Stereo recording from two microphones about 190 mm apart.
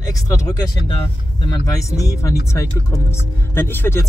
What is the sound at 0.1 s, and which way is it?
Speech, 15° left (ahead or behind).